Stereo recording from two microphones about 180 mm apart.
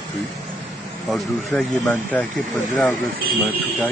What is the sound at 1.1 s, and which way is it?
Speech, 5° left (ahead or behind).